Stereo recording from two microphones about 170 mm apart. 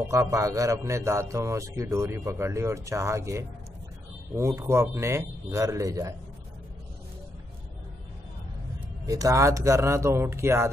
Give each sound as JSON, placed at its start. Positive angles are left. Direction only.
{"t": 0.1, "sound": "a man's voice", "side_deg": -20}
{"t": 9.0, "sound": "a man's voice", "side_deg": -20}